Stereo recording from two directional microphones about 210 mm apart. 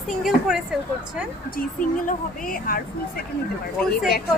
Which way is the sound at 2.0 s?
40° left (ahead or behind).